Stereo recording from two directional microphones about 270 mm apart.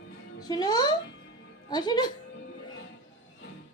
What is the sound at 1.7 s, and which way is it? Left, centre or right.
Speech, centre.